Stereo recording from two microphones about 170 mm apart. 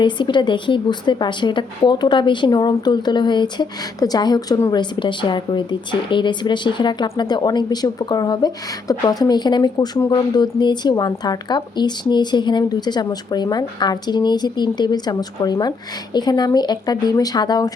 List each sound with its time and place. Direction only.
0.0 s a woman's voice: 25° left (ahead or behind)